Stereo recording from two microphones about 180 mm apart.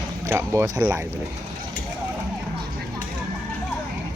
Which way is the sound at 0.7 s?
10° right (ahead or behind).